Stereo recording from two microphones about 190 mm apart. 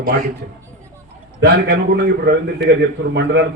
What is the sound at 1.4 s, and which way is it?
Speech, 60° right (ahead or behind).